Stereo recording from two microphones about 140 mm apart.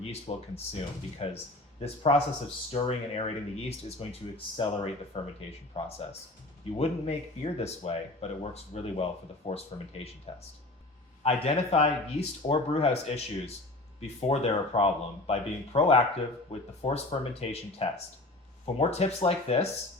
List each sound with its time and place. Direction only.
0.0 s speech: 45° left (ahead or behind)